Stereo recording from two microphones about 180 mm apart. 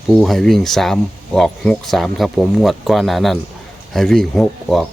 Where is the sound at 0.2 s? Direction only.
Centre (ahead or behind).